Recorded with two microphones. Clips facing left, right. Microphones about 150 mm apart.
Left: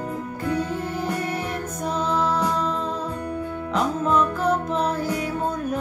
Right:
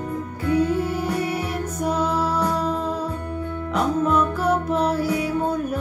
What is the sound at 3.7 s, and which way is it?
Music, 10° right (ahead or behind).